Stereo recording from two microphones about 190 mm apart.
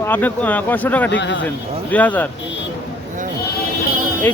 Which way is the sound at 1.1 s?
70° left (ahead or behind).